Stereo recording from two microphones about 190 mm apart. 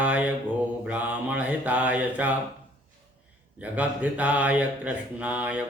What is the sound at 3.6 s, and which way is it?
Mantra, 10° right (ahead or behind).